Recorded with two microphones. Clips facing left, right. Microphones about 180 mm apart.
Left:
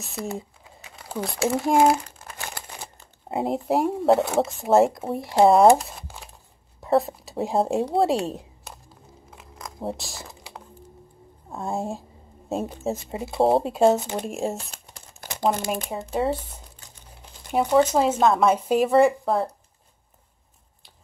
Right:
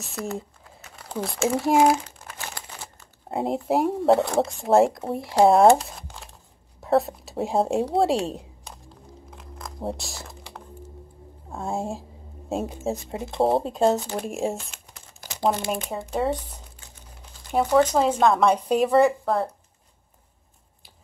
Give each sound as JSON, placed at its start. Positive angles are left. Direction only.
{"t": 0.3, "sound": "speech", "side_deg": 5}
{"t": 2.2, "sound": "crumpling", "side_deg": 15}
{"t": 3.3, "sound": "speech", "side_deg": 0}
{"t": 5.8, "sound": "a sound", "side_deg": 0}
{"t": 11.5, "sound": "speech", "side_deg": 0}
{"t": 15.1, "sound": "crumpling", "side_deg": 55}
{"t": 16.1, "sound": "speech", "side_deg": 5}
{"t": 17.5, "sound": "speech", "side_deg": 5}